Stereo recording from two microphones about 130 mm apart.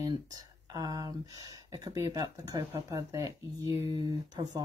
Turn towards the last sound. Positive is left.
turn(degrees=-30)  # may be behind; listen again after turning